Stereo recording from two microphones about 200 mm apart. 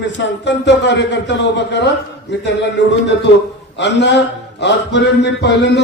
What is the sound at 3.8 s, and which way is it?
Speech, 60° left (ahead or behind).